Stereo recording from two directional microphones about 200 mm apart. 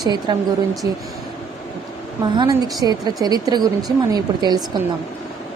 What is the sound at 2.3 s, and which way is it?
A woman's voice, 20° right (ahead or behind).